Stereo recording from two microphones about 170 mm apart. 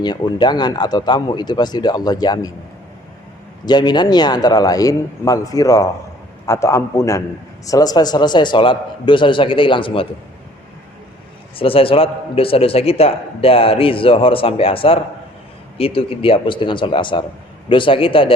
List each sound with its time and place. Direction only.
0.0 s speech: 25° left (ahead or behind)
3.7 s a man's voice: 25° left (ahead or behind)
11.5 s a man's voice: 35° left (ahead or behind)